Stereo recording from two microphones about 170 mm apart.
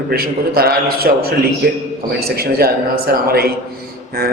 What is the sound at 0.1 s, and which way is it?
A man's voice, 65° right (ahead or behind).